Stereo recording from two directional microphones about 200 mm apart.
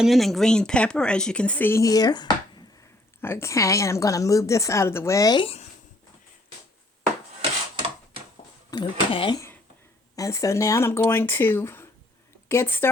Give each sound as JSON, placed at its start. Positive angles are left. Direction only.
{"t": 0.0, "sound": "a woman's voice", "side_deg": 0}
{"t": 8.7, "sound": "a woman's voice", "side_deg": 25}